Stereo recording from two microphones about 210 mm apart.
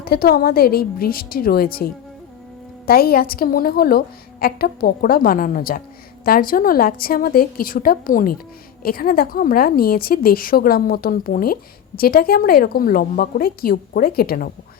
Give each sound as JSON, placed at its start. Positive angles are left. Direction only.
{"t": 0.0, "sound": "a woman's voice", "side_deg": 45}